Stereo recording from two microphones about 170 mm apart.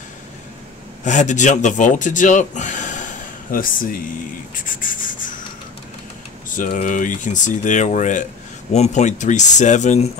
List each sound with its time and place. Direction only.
1.0 s speech: 45° left (ahead or behind)
4.6 s rub: 50° left (ahead or behind)
6.5 s speech: 50° left (ahead or behind)